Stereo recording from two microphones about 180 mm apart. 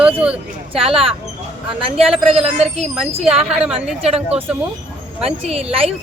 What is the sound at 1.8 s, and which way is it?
Speech, 35° right (ahead or behind).